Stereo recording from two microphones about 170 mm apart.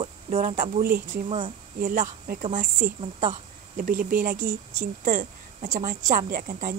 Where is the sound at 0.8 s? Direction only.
60° right (ahead or behind).